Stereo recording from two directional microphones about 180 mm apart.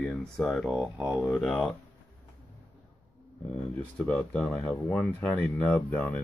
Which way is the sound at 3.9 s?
5° left (ahead or behind).